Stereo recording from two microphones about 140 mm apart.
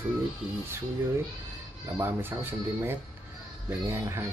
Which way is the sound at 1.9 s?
15° right (ahead or behind).